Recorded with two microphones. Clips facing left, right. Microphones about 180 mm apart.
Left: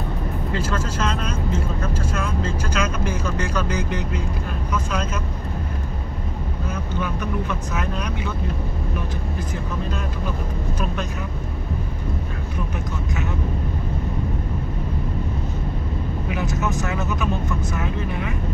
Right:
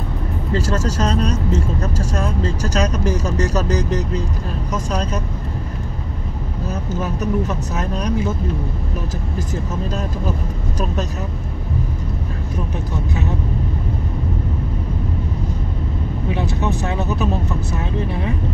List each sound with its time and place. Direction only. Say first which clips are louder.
0.5 s speech: right 6 dB; 40° right (ahead or behind)
6.7 s speech: right 3 dB; 40° right (ahead or behind)
16.3 s speech: right 4 dB; 30° right (ahead or behind)